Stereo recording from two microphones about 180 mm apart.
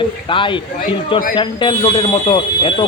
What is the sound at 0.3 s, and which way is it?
Speech, 25° left (ahead or behind).